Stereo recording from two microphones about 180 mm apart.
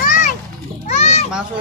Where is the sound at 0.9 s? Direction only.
40° left (ahead or behind).